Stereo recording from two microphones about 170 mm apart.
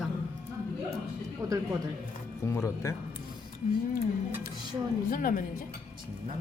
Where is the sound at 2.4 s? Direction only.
15° left (ahead or behind).